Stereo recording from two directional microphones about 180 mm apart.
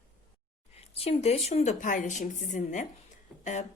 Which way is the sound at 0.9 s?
35° left (ahead or behind).